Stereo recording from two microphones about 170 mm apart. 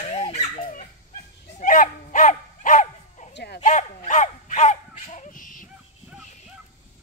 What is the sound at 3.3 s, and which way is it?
Bow-wow, 65° left (ahead or behind).